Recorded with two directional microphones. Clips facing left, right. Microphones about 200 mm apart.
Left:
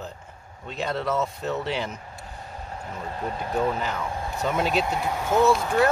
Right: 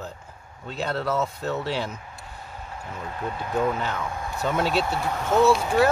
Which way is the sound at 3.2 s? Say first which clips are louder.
Right 1 dB; 35° left (ahead or behind).